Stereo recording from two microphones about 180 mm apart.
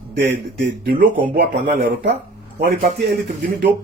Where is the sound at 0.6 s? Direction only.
50° right (ahead or behind).